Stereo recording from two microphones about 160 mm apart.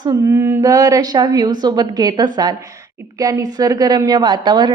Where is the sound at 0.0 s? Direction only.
20° right (ahead or behind).